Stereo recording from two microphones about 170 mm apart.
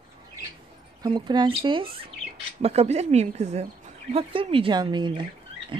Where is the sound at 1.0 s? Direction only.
25° right (ahead or behind).